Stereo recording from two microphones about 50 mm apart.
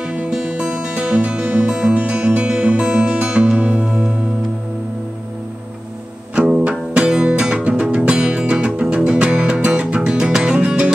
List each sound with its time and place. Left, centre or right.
0.0 s music: right
6.3 s music: centre